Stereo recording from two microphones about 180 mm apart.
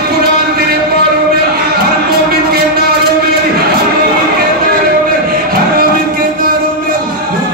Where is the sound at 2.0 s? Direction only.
60° right (ahead or behind).